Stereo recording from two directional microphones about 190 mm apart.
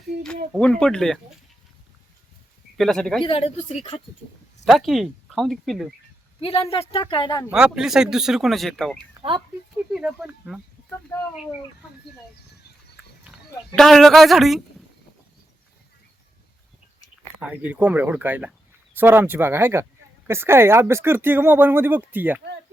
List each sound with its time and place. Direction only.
0.6 s speech: 5° left (ahead or behind)
2.7 s speech: centre (ahead or behind)
3.2 s speech: 30° left (ahead or behind)
4.6 s speech: centre (ahead or behind)
6.4 s speech: 30° left (ahead or behind)
7.5 s speech: 5° right (ahead or behind)
9.2 s speech: 30° right (ahead or behind)
9.9 s speech: 5° right (ahead or behind)
11.1 s speech: 15° left (ahead or behind)
13.7 s speech: centre (ahead or behind)
17.4 s speech: 5° right (ahead or behind)